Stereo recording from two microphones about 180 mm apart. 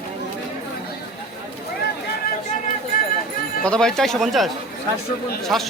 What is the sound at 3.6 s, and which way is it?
A man's voice, 5° left (ahead or behind).